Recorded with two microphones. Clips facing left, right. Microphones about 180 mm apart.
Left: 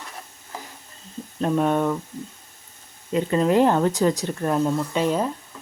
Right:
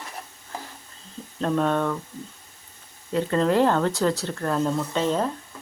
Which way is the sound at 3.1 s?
15° left (ahead or behind).